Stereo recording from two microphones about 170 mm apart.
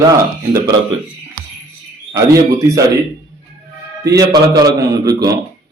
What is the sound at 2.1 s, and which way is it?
Speech, 20° right (ahead or behind).